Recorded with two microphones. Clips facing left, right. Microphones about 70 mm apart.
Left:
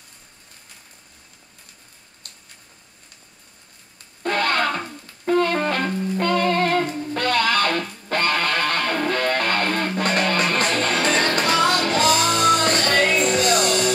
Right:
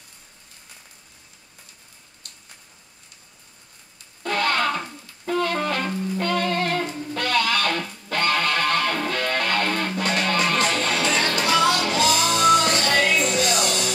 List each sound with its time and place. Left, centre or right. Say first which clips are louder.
4.2 s music: left 1 dB; left